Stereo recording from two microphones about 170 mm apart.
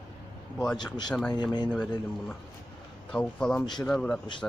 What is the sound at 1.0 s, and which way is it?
Speech, 5° left (ahead or behind).